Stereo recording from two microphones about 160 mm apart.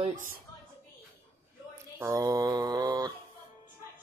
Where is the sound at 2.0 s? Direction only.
20° right (ahead or behind).